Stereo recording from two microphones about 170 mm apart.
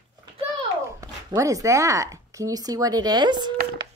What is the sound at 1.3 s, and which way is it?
Speech, 20° right (ahead or behind).